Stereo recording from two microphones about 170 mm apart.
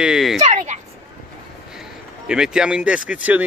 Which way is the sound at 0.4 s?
40° right (ahead or behind).